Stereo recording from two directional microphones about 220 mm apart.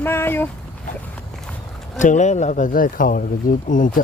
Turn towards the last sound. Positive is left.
turn(degrees=35)  # may be behind; listen again after turning